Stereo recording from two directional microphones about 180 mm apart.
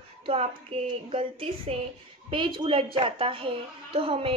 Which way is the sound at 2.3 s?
25° right (ahead or behind).